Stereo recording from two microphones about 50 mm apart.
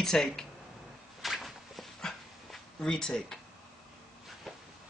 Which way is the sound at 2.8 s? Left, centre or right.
Centre.